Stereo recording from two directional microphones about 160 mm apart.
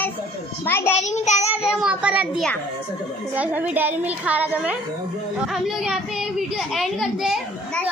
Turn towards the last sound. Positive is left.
turn(degrees=0)  # may be behind; listen again after turning